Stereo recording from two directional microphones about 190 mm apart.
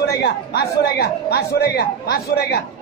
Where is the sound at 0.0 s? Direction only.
55° left (ahead or behind).